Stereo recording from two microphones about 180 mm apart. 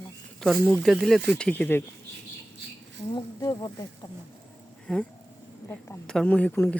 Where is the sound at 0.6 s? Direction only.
5° left (ahead or behind).